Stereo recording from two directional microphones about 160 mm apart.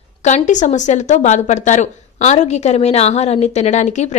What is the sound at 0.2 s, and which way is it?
Speech, 50° left (ahead or behind).